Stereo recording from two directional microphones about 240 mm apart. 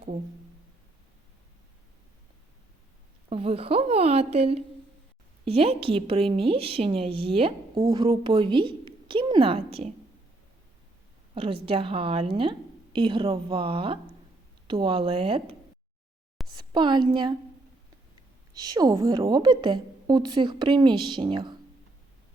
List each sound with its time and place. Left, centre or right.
3.2 s a woman's voice: right
11.3 s a woman's voice: right
18.5 s a woman's voice: centre